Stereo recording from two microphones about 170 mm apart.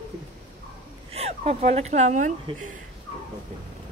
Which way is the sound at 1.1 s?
40° right (ahead or behind).